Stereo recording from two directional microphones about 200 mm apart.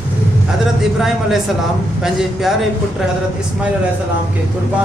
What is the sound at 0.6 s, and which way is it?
A man's voice, centre (ahead or behind).